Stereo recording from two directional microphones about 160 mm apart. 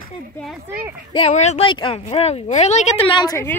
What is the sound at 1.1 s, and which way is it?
Speech, 40° left (ahead or behind).